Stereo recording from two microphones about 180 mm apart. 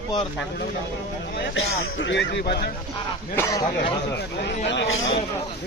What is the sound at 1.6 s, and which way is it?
Speech, 85° left.